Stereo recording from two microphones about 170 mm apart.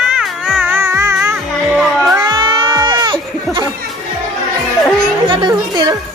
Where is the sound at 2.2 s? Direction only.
25° right (ahead or behind).